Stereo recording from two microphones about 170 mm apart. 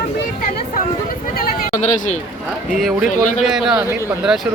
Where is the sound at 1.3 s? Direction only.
60° left (ahead or behind).